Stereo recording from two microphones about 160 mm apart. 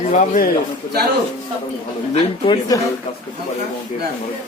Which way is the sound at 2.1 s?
30° left (ahead or behind).